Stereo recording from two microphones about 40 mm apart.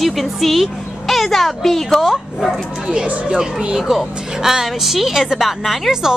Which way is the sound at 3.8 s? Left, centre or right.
Centre.